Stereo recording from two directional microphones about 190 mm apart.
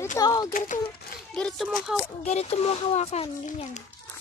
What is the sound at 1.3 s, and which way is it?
Speech, 5° left (ahead or behind).